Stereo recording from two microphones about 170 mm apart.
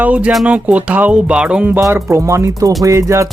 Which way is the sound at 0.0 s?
10° right (ahead or behind).